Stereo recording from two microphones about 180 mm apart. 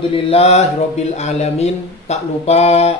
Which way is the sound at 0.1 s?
35° left (ahead or behind).